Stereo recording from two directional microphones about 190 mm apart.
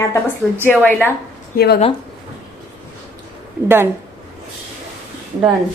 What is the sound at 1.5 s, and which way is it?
Speech, 55° left (ahead or behind).